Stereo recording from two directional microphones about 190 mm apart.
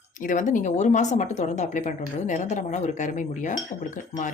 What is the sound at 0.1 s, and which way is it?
Speech, 45° left (ahead or behind).